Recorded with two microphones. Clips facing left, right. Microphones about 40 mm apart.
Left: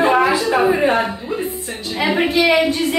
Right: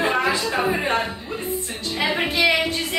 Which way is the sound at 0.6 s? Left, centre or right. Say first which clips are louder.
Left 7 dB; centre.